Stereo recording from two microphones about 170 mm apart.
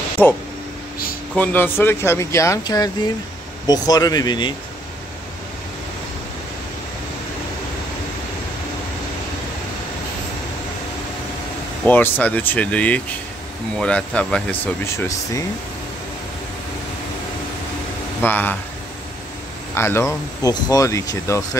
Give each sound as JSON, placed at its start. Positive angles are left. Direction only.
{"t": 0.2, "sound": "speech", "side_deg": 10}
{"t": 11.8, "sound": "speech", "side_deg": 10}
{"t": 18.2, "sound": "speech", "side_deg": 10}
{"t": 19.7, "sound": "speech", "side_deg": 15}